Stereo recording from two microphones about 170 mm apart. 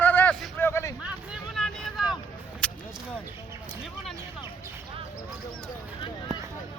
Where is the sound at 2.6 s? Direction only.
5° left (ahead or behind).